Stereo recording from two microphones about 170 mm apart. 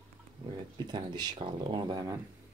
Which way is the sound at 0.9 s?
25° right (ahead or behind).